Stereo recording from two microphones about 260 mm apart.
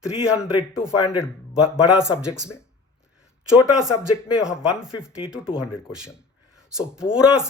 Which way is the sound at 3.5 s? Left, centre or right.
Centre.